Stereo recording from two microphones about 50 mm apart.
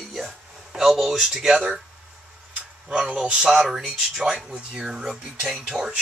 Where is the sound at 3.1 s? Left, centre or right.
Right.